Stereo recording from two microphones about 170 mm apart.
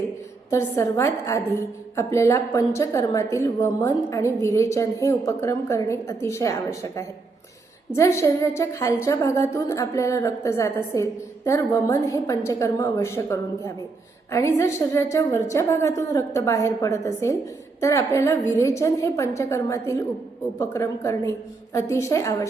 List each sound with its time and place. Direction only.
0.5 s a woman's voice: 15° left (ahead or behind)